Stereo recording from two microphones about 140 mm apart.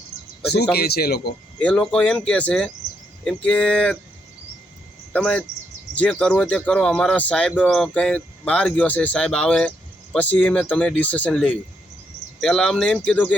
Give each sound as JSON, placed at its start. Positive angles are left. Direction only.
{"t": 0.8, "sound": "speech", "side_deg": 90}
{"t": 1.5, "sound": "speech", "side_deg": 5}
{"t": 5.1, "sound": "speech", "side_deg": 5}